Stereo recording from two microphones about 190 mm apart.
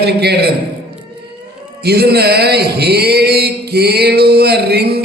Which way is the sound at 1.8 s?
55° right (ahead or behind).